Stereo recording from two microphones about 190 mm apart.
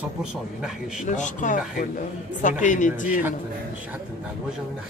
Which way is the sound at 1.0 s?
40° left (ahead or behind).